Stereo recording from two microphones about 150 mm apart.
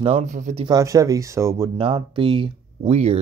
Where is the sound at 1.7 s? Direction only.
40° right (ahead or behind).